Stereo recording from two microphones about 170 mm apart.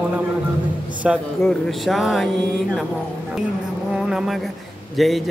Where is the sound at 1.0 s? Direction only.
5° right (ahead or behind).